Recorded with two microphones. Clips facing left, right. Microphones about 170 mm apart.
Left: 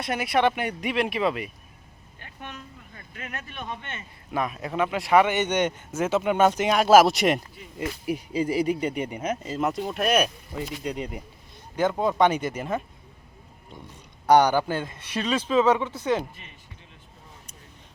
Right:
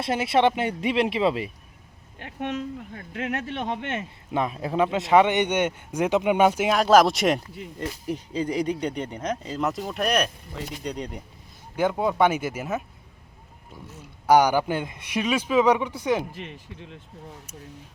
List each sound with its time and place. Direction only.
0.0 s speech: 25° right (ahead or behind)
2.1 s speech: 80° right
4.3 s speech: 25° right (ahead or behind); by 11.2 s 5° left (ahead or behind)
11.8 s speech: 10° right (ahead or behind)
16.3 s speech: 85° right